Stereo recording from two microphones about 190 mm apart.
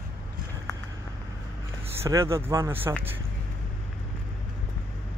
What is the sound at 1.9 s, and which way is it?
Speech, 15° right (ahead or behind).